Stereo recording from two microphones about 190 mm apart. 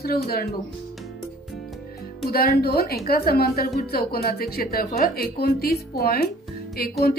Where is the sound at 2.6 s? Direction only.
55° left (ahead or behind).